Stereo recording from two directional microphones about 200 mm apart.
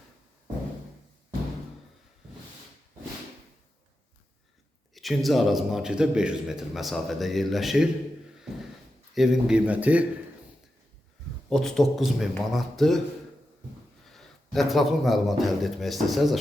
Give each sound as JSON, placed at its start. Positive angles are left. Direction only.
{"t": 4.9, "sound": "a man's voice", "side_deg": 0}
{"t": 9.1, "sound": "a man's voice", "side_deg": 0}
{"t": 11.4, "sound": "a man's voice", "side_deg": 0}
{"t": 14.0, "sound": "a man's voice", "side_deg": 0}